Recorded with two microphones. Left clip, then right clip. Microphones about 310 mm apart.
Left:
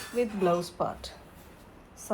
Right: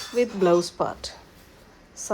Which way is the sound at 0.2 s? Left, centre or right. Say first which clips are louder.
Right 6 dB; right.